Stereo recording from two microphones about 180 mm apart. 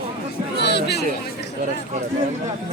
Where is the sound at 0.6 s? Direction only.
70° left (ahead or behind).